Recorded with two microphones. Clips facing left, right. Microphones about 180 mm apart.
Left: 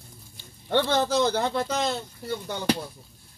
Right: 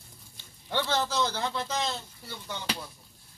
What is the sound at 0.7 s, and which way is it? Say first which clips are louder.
Speech: left 6 dB; 55° left (ahead or behind).